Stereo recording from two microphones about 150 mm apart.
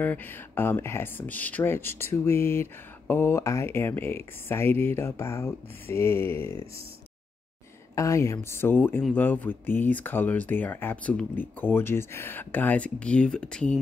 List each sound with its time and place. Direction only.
0.0 s speech: 10° left (ahead or behind)
7.9 s speech: 20° left (ahead or behind)